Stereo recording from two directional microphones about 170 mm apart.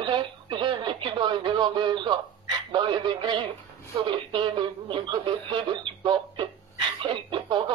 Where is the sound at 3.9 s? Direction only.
30° right (ahead or behind).